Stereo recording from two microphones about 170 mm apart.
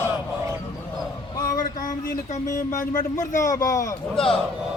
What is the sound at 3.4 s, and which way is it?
Speech, 20° left (ahead or behind).